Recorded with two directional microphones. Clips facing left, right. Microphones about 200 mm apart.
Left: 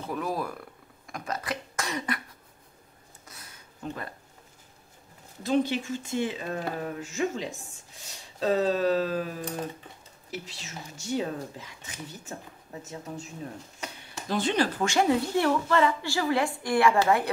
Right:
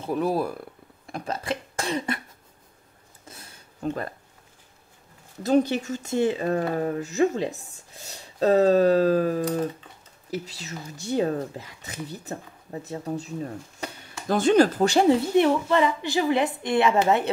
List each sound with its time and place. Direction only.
0.1 s speech: 30° right (ahead or behind)
1.0 s a sound: 30° right (ahead or behind)
3.3 s a sound: 30° right (ahead or behind)
5.4 s speech: 40° right (ahead or behind)
14.2 s speech: 45° right (ahead or behind)
15.3 s a woman's voice: 20° right (ahead or behind)